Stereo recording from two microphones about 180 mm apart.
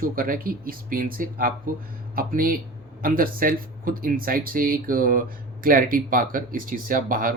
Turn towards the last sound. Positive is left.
turn(degrees=-50)  # may be behind; listen again after turning